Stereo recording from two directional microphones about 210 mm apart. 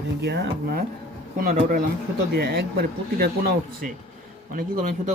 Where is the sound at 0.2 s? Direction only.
50° right (ahead or behind).